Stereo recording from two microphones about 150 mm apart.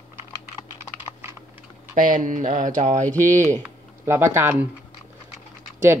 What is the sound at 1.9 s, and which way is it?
Speech, 65° right (ahead or behind).